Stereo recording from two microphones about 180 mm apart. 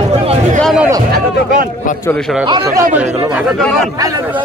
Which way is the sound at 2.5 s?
25° right (ahead or behind).